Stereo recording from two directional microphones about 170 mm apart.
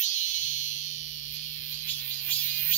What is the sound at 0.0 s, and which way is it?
Music, 45° left (ahead or behind).